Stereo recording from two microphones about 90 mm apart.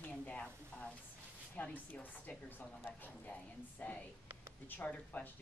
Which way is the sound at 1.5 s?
15° left (ahead or behind).